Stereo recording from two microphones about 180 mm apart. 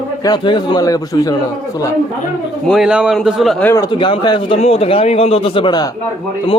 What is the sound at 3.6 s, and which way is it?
A man's voice, 15° left (ahead or behind).